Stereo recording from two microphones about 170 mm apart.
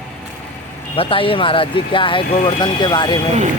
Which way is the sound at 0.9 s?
30° left (ahead or behind).